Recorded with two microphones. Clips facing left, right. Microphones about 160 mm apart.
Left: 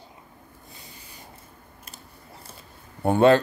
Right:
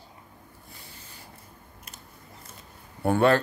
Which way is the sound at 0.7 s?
15° left (ahead or behind).